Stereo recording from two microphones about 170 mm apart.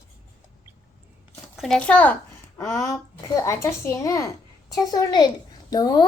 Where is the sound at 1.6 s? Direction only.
5° left (ahead or behind).